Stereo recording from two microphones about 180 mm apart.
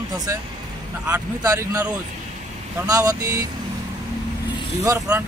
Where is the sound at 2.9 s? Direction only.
20° right (ahead or behind).